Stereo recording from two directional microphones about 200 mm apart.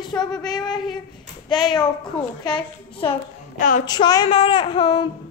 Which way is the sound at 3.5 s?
40° left (ahead or behind).